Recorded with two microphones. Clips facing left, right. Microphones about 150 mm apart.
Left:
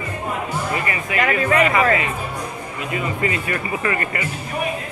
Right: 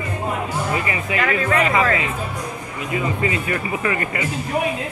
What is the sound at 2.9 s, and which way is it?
Speech, 15° right (ahead or behind).